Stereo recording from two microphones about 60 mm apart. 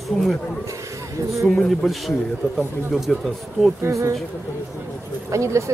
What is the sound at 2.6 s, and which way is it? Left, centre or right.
Speech, centre.